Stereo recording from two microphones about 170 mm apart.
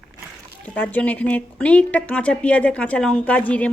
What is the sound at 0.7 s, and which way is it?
A woman's voice, 10° left (ahead or behind).